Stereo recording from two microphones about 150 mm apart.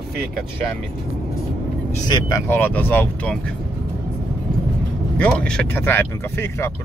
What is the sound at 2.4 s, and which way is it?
Speech, 15° left (ahead or behind).